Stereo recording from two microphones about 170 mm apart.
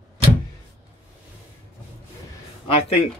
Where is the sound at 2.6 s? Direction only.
35° left (ahead or behind).